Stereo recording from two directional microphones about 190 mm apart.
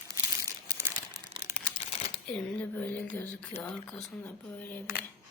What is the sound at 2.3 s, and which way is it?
Speech, 10° left (ahead or behind).